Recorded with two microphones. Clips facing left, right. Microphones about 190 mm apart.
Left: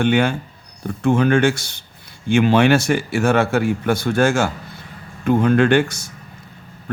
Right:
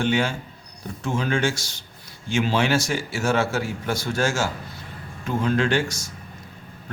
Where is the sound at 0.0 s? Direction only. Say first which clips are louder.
Left 6 dB; 60° left (ahead or behind).